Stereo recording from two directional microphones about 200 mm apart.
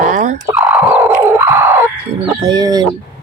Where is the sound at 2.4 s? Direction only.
20° right (ahead or behind).